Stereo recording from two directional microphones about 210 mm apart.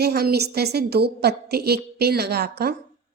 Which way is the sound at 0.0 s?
50° right (ahead or behind).